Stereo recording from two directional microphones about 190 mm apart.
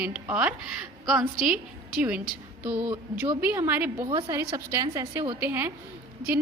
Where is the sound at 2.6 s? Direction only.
5° right (ahead or behind).